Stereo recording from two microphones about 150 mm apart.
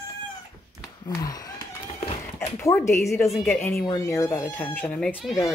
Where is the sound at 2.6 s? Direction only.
20° left (ahead or behind).